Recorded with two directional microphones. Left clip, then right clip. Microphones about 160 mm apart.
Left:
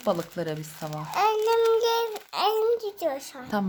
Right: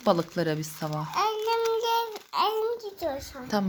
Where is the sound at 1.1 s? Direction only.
35° left (ahead or behind).